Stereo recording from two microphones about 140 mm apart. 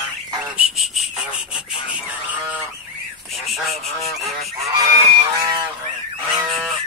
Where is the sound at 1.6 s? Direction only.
35° left (ahead or behind).